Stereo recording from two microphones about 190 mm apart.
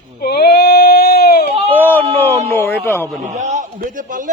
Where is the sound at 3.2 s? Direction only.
40° right (ahead or behind).